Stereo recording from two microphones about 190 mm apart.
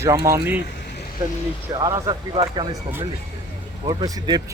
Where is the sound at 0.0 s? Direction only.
15° right (ahead or behind).